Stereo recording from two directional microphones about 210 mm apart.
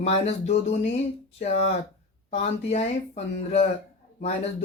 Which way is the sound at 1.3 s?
35° left (ahead or behind).